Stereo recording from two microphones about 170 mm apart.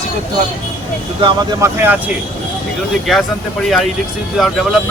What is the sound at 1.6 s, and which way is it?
Speech, 10° right (ahead or behind).